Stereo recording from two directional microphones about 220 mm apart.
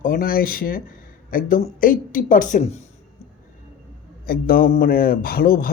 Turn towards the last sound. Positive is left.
turn(degrees=40)  # may be behind; listen again after turning